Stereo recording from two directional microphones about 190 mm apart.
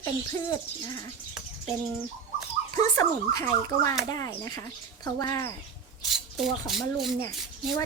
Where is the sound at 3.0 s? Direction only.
15° left (ahead or behind).